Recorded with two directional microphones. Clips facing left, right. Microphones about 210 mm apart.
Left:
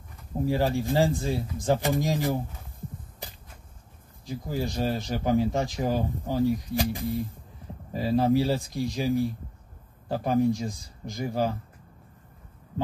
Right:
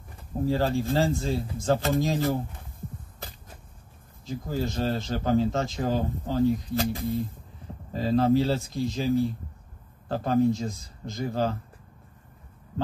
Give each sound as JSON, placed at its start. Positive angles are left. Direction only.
{"t": 0.4, "sound": "a man's voice", "side_deg": 15}
{"t": 3.2, "sound": "a sound", "side_deg": 15}
{"t": 4.3, "sound": "a man's voice", "side_deg": 15}